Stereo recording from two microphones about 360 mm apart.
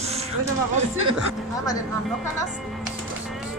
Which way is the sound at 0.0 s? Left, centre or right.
Centre.